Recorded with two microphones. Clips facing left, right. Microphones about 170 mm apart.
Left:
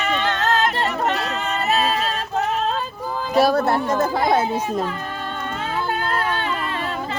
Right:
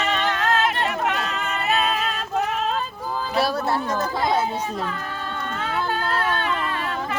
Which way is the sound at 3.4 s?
50° left (ahead or behind).